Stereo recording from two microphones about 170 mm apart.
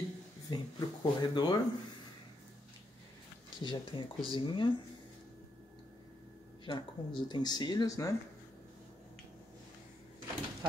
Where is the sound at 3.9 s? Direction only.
30° left (ahead or behind).